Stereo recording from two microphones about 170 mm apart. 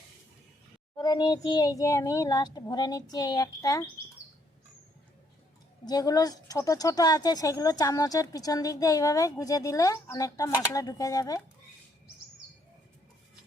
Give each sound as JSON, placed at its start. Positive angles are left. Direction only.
{"t": 0.9, "sound": "speech", "side_deg": 25}
{"t": 5.8, "sound": "speech", "side_deg": 20}